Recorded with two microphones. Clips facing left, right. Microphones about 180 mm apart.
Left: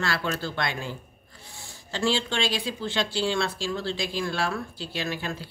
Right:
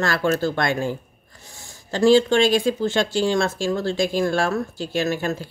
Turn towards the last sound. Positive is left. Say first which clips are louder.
# right 9 dB
turn(degrees=-45)  # may be behind; listen again after turning